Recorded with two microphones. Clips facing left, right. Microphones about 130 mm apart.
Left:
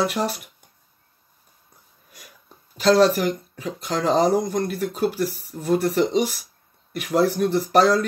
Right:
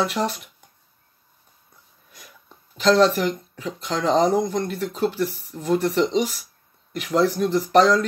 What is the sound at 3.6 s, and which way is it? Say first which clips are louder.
Speech: right 1 dB; 40° left (ahead or behind).